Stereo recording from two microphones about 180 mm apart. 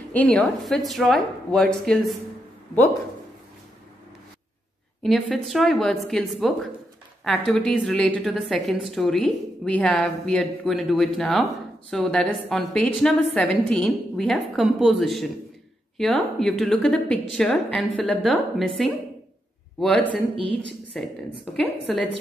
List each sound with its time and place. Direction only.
0.1 s a woman's voice: 10° left (ahead or behind)
5.0 s a woman's voice: centre (ahead or behind)